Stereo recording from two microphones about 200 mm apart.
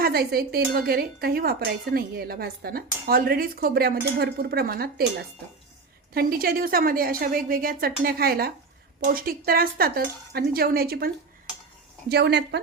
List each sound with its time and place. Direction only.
0.0 s a woman's voice: 50° right (ahead or behind)
6.1 s a woman's voice: 50° right (ahead or behind)